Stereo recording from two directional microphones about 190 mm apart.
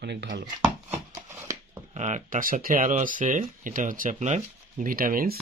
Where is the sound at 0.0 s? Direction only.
65° right (ahead or behind).